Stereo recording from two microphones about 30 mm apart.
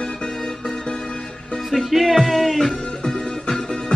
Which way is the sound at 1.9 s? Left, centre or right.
Centre.